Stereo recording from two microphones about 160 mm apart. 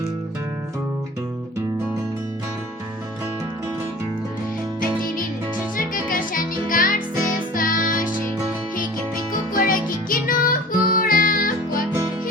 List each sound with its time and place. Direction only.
5.7 s music: 60° left (ahead or behind)
9.6 s music: 60° left (ahead or behind)